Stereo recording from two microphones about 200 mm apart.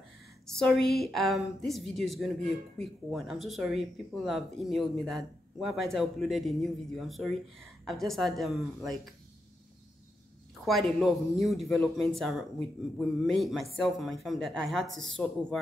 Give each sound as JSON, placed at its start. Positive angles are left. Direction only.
{"t": 0.5, "sound": "speech", "side_deg": 5}
{"t": 10.6, "sound": "speech", "side_deg": 0}
{"t": 14.9, "sound": "a woman's voice", "side_deg": -75}
{"t": 15.1, "sound": "speech", "side_deg": 5}